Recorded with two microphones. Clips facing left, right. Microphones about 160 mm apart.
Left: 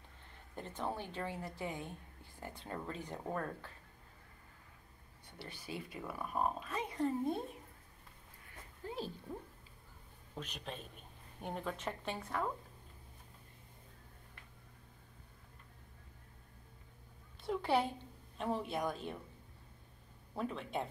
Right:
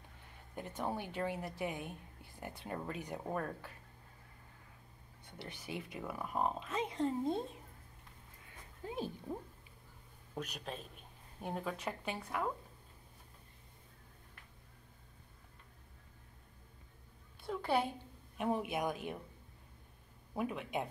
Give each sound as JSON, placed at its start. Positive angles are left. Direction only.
{"t": 0.6, "sound": "a woman's voice", "side_deg": -15}
{"t": 5.2, "sound": "speech", "side_deg": -20}
{"t": 8.8, "sound": "a woman's voice", "side_deg": -15}
{"t": 17.5, "sound": "a sound", "side_deg": 10}
{"t": 18.4, "sound": "a woman's voice", "side_deg": -15}
{"t": 20.3, "sound": "a woman's voice", "side_deg": -10}